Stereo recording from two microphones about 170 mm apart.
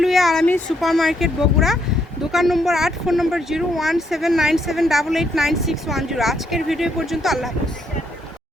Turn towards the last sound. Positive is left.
turn(degrees=0)  # may be behind; listen again after turning